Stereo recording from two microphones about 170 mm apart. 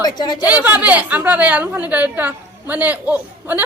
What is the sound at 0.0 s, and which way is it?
Speech, 25° left (ahead or behind).